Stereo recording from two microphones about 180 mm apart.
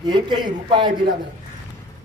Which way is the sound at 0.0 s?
25° right (ahead or behind).